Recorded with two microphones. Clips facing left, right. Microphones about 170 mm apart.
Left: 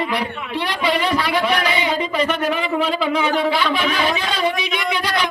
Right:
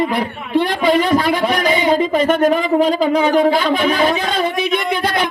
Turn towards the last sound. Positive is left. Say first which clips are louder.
# right 5 dB
turn(degrees=-50)  # may be behind; listen again after turning